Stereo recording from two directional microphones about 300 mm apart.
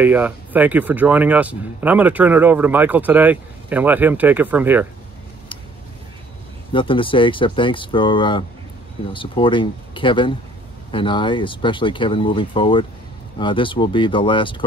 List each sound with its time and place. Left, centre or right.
0.0 s speech: centre
6.7 s speech: centre